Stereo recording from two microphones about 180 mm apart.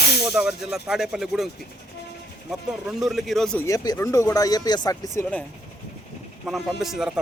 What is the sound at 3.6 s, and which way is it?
Speech, 20° left (ahead or behind).